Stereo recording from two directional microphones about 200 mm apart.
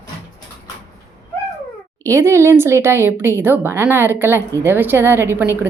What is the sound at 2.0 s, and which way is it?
A woman's voice, 15° right (ahead or behind).